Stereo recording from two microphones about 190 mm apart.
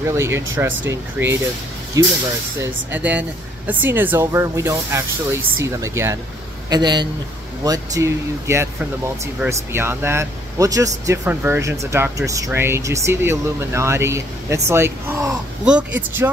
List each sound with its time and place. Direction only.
0.0 s a man's voice: 15° right (ahead or behind)